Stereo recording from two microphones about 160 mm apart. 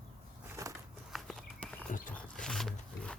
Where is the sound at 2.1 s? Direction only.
5° left (ahead or behind).